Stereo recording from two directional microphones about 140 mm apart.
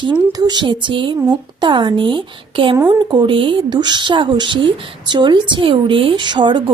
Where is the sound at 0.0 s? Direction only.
30° right (ahead or behind).